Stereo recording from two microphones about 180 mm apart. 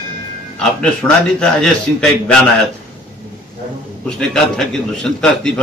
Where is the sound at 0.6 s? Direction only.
5° left (ahead or behind).